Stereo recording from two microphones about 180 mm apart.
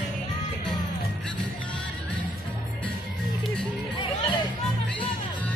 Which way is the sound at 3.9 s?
25° left (ahead or behind).